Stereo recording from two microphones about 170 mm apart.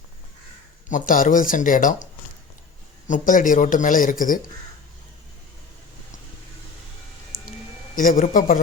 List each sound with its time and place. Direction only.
0.9 s speech: 50° left (ahead or behind)
3.1 s speech: 50° left (ahead or behind)
7.9 s speech: 50° left (ahead or behind)